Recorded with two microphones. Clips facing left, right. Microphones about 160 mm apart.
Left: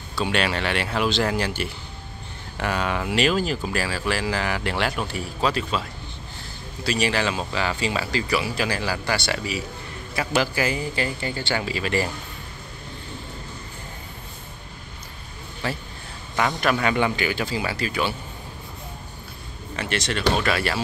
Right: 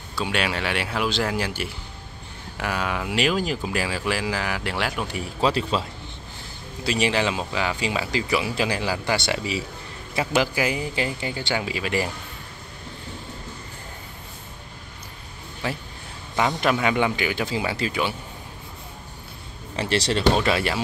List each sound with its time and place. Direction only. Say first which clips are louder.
0.1 s speech: left 2 dB; 10° right (ahead or behind)
5.5 s speech: right 2 dB; 25° right (ahead or behind); by 12.1 s 10° right (ahead or behind)
15.6 s speech: even; 15° right (ahead or behind)
19.7 s speech: right 4 dB; 30° right (ahead or behind)